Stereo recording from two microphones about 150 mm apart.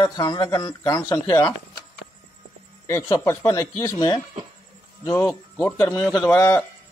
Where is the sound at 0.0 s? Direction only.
30° left (ahead or behind).